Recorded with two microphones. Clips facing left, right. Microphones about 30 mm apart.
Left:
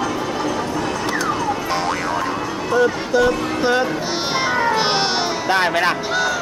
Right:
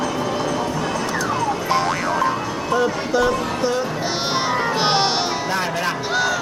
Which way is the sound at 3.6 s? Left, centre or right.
Left.